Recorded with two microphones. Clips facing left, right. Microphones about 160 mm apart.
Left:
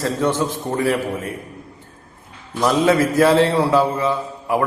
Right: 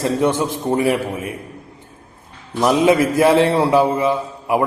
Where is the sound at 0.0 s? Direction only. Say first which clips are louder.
Right 2 dB; 15° right (ahead or behind).